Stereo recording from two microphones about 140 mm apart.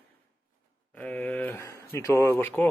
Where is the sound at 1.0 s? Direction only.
10° left (ahead or behind).